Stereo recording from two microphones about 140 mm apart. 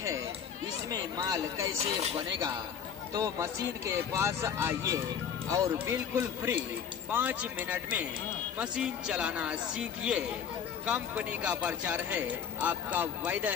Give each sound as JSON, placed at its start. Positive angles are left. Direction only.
{"t": 0.8, "sound": "speech", "side_deg": -25}
{"t": 3.1, "sound": "speech", "side_deg": -25}